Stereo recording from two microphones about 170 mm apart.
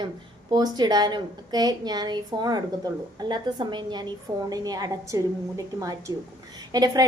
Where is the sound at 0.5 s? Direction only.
25° right (ahead or behind).